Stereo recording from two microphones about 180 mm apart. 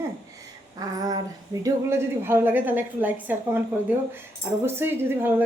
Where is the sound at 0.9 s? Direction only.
20° right (ahead or behind).